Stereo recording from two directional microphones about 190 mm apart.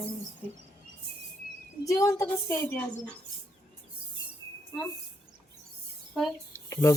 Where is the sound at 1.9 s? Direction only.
15° left (ahead or behind).